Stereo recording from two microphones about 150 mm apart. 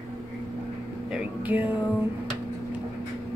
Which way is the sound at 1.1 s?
10° right (ahead or behind).